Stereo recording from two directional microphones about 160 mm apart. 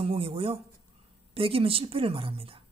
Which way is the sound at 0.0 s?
35° right (ahead or behind).